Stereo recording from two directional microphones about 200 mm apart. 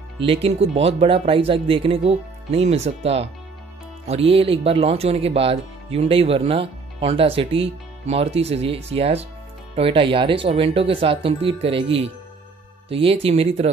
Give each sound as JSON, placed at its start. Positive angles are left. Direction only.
{"t": 0.2, "sound": "speech", "side_deg": -30}